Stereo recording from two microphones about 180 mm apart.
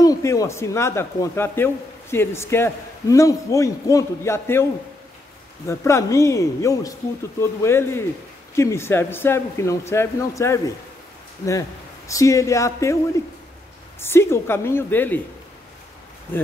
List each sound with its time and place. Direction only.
0.0 s a man's voice: 20° left (ahead or behind)
5.7 s a man's voice: 15° left (ahead or behind)
12.1 s a man's voice: 15° left (ahead or behind)
14.0 s a man's voice: 15° left (ahead or behind)